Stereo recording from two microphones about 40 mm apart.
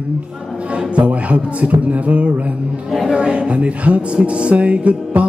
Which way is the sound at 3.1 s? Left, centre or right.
Right.